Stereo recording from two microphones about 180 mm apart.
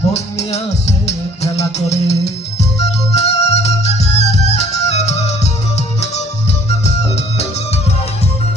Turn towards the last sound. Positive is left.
turn(degrees=35)  # may be behind; listen again after turning